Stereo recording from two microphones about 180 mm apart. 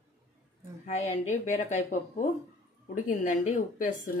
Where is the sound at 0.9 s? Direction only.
40° left (ahead or behind).